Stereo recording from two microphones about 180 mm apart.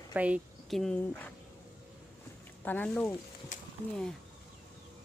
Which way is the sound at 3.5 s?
45° left (ahead or behind).